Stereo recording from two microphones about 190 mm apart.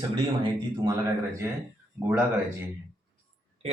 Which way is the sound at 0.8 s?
15° right (ahead or behind).